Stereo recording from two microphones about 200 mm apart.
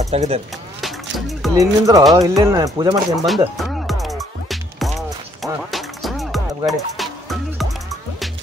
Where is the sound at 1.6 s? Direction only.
15° right (ahead or behind).